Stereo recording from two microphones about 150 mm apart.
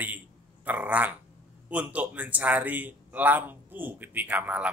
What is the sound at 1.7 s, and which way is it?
A man's voice, 10° right (ahead or behind).